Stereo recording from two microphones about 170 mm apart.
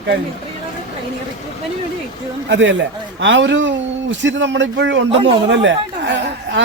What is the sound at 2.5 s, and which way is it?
Speech, 90° right.